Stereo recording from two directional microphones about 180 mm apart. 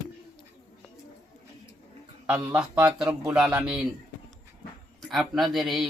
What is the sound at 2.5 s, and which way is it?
A man's voice, 5° right (ahead or behind).